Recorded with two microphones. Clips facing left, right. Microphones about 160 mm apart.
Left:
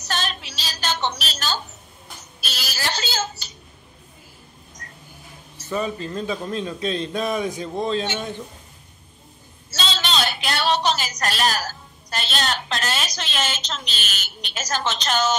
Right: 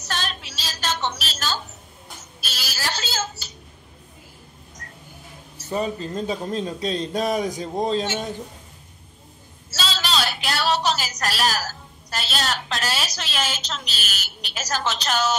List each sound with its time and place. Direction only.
0.0 s a sound: centre (ahead or behind)
2.4 s a woman's voice: centre (ahead or behind)
6.1 s a man's voice: 35° right (ahead or behind)
9.7 s a woman's voice: 5° right (ahead or behind)